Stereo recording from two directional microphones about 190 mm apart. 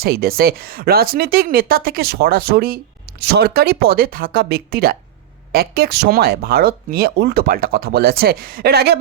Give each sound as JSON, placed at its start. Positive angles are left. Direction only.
{"t": 0.0, "sound": "speech", "side_deg": -50}